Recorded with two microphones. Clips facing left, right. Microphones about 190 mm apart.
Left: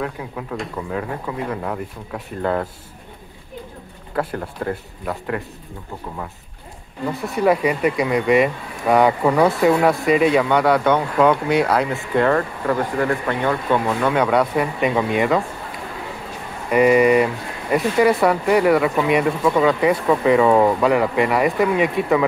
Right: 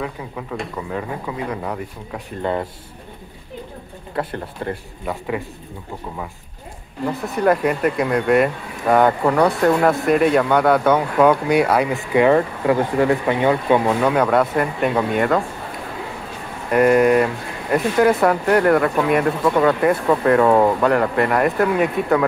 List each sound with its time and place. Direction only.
0.0 s speech: centre (ahead or behind)
4.1 s speech: centre (ahead or behind)
7.1 s speech: centre (ahead or behind); by 14.1 s 15° right (ahead or behind)
14.1 s speech: 5° right (ahead or behind)
16.7 s speech: centre (ahead or behind)